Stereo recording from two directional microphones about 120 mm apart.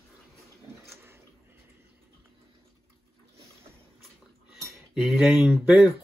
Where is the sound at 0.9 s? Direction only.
20° right (ahead or behind).